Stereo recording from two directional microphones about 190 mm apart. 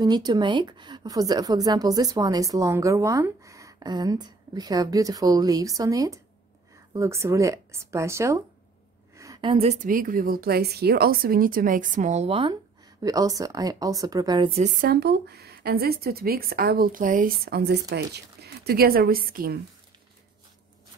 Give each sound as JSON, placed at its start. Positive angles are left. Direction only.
{"t": 0.0, "sound": "a woman's voice", "side_deg": -20}
{"t": 14.6, "sound": "speech", "side_deg": -55}
{"t": 17.5, "sound": "speech", "side_deg": -60}